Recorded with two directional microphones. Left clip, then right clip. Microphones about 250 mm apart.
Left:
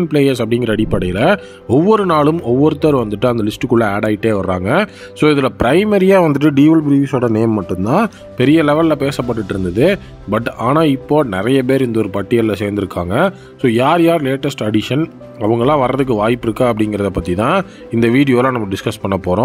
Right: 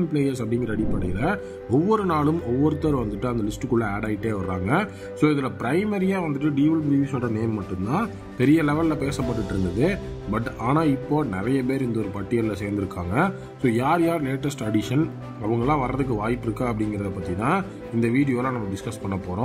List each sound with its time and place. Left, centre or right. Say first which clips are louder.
0.1 s speech: left 11 dB; left
8.4 s speech: left 9 dB; left